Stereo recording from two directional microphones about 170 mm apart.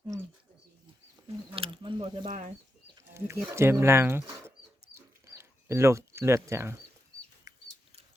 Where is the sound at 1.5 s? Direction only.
30° right (ahead or behind).